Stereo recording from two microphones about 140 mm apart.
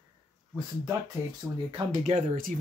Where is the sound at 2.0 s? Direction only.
65° right (ahead or behind).